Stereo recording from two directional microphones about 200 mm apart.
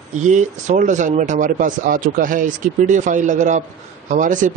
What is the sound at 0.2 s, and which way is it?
Speech, 35° right (ahead or behind).